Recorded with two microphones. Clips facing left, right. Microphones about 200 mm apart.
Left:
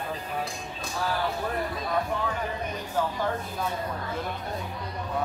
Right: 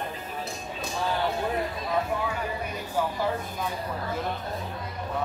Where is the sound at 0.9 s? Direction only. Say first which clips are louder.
Right 1 dB; 25° right (ahead or behind).